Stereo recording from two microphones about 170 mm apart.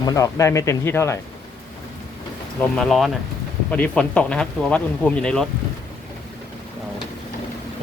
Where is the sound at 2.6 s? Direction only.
5° left (ahead or behind).